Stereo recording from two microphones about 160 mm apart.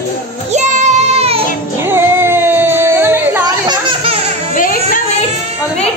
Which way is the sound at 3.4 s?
30° right (ahead or behind).